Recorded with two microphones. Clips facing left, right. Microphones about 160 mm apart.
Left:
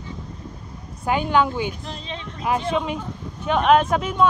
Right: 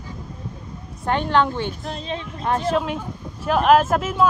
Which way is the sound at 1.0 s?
5° left (ahead or behind).